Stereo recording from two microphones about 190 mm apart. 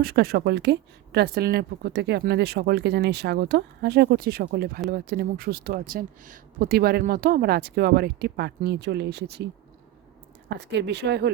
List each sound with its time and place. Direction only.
0.0 s speech: 55° right (ahead or behind)
10.6 s speech: 65° right (ahead or behind)